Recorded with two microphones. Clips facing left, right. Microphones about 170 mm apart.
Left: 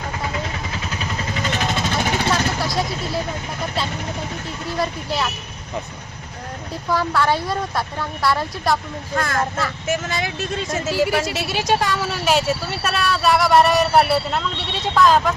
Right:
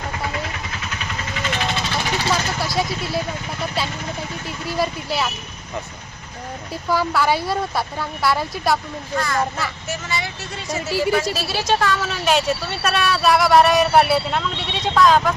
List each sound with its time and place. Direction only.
0.9 s vehicle: 35° left (ahead or behind)
2.3 s vehicle: centre (ahead or behind)
4.8 s speech: 5° right (ahead or behind)
6.9 s speech: 5° right (ahead or behind)
9.1 s speech: 55° left (ahead or behind)
11.0 s speech: 15° left (ahead or behind)